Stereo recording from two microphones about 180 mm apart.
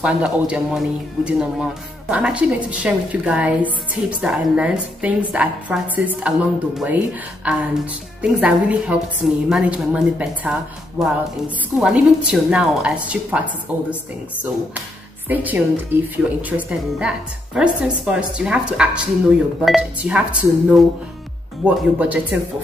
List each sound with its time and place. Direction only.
0.0 s a man's voice: 5° right (ahead or behind)
11.7 s a man's voice: 5° right (ahead or behind)
15.2 s a man's voice: 10° right (ahead or behind)